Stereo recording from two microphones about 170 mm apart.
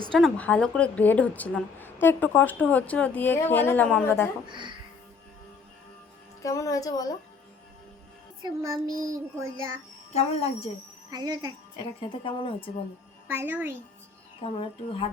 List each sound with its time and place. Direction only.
0.1 s speech: 5° left (ahead or behind)
6.4 s speech: 20° left (ahead or behind)
8.4 s child singing: 20° right (ahead or behind)
9.0 s music: 20° right (ahead or behind)
10.1 s speech: 40° left (ahead or behind)
11.1 s speech: 25° right (ahead or behind)
11.9 s speech: 30° left (ahead or behind)
13.2 s music: 10° right (ahead or behind)
14.4 s speech: 35° left (ahead or behind)